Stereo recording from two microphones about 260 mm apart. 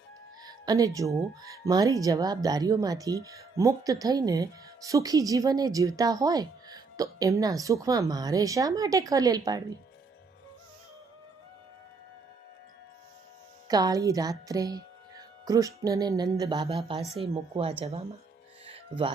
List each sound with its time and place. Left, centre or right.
0.4 s speech: centre
13.7 s speech: centre